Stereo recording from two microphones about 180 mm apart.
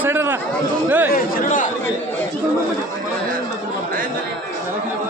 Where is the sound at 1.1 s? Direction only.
50° left (ahead or behind).